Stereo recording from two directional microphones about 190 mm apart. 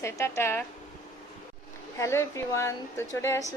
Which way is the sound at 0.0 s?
15° left (ahead or behind).